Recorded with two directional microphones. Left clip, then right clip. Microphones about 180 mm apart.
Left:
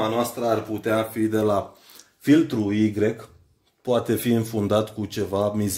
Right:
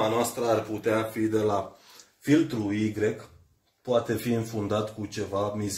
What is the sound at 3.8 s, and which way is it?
Speech, 55° left (ahead or behind).